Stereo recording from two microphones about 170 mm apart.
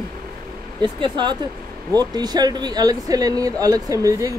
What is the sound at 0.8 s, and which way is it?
Speech, 25° right (ahead or behind).